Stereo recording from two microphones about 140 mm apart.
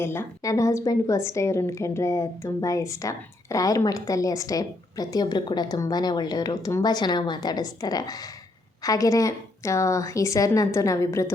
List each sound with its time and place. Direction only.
0.0 s a woman's voice: 15° left (ahead or behind)